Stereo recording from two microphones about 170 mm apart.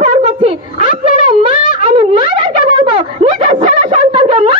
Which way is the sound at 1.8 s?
30° right (ahead or behind).